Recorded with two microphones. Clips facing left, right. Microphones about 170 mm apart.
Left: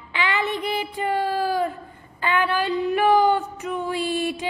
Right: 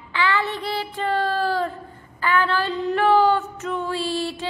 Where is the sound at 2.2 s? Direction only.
20° left (ahead or behind).